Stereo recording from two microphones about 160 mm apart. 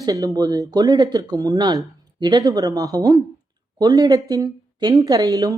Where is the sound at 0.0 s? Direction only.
20° right (ahead or behind).